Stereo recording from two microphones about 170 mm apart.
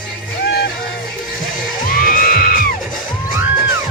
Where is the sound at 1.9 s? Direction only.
60° left (ahead or behind).